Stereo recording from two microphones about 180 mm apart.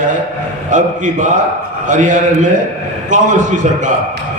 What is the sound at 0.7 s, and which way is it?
A man's voice, 45° right (ahead or behind).